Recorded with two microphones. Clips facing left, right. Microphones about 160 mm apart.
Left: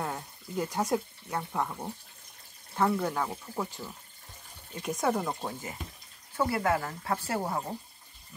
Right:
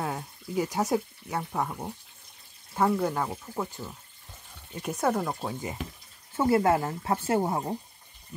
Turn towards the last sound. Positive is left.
turn(degrees=-20)  # may be behind; listen again after turning